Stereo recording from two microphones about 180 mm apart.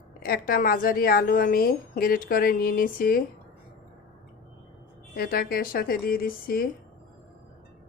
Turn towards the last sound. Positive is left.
turn(degrees=55)  # may be behind; listen again after turning